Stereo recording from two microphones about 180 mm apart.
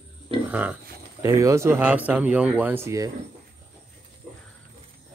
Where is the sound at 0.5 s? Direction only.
10° right (ahead or behind).